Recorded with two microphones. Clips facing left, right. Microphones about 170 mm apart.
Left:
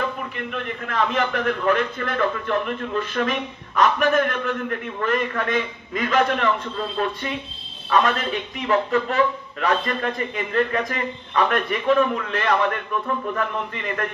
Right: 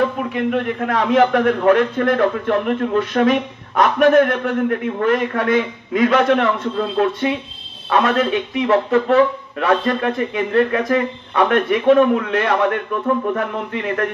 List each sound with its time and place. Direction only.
0.3 s a man's voice: 65° right (ahead or behind)
12.6 s a man's voice: 50° right (ahead or behind)